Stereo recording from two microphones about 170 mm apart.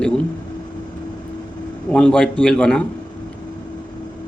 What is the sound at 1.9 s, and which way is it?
Speech, 5° left (ahead or behind).